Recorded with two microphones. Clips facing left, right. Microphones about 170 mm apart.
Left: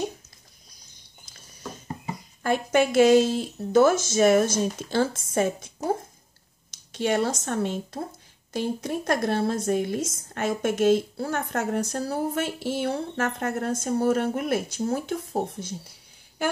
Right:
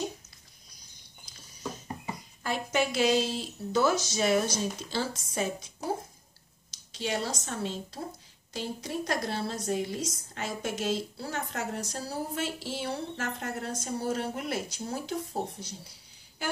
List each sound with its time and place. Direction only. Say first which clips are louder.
2.4 s a woman's voice: left 7 dB; 50° left (ahead or behind)
6.9 s a woman's voice: left 8 dB; 55° left (ahead or behind)